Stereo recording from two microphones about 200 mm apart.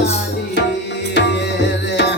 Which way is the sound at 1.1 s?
60° left (ahead or behind).